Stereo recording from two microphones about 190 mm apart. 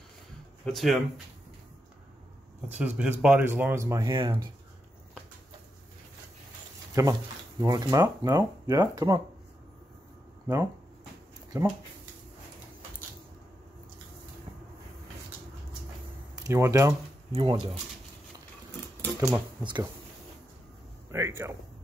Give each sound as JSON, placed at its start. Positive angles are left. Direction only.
{"t": 0.7, "sound": "speech", "side_deg": 0}
{"t": 2.8, "sound": "speech", "side_deg": -5}
{"t": 7.0, "sound": "speech", "side_deg": -20}
{"t": 16.4, "sound": "speech", "side_deg": -15}
{"t": 17.3, "sound": "speech", "side_deg": -30}
{"t": 19.1, "sound": "speech", "side_deg": -20}
{"t": 21.1, "sound": "speech", "side_deg": -15}